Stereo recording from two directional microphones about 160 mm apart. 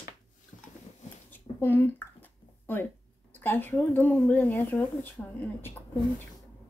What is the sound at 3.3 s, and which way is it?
Speech, 10° left (ahead or behind).